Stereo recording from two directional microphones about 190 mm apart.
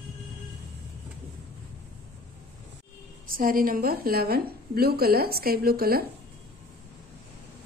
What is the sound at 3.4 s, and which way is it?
A woman's voice, 50° right (ahead or behind).